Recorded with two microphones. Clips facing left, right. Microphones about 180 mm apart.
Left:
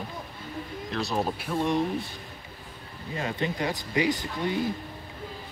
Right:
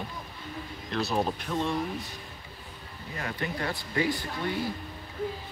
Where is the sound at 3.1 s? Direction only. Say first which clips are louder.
Left 4 dB; 20° left (ahead or behind).